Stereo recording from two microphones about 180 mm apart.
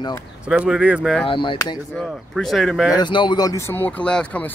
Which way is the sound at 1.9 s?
Centre (ahead or behind).